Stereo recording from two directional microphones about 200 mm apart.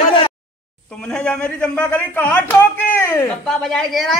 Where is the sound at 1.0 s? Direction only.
5° left (ahead or behind).